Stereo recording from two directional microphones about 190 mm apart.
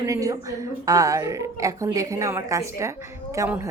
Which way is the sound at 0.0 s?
20° right (ahead or behind).